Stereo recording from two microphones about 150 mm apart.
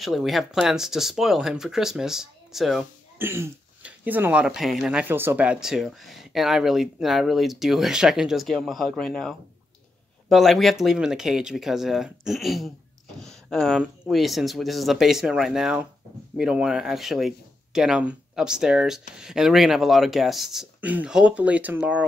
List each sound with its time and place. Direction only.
0.0 s speech: centre (ahead or behind)
3.2 s speech: 15° right (ahead or behind)